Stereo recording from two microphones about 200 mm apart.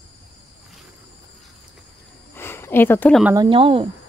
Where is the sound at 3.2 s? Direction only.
20° right (ahead or behind).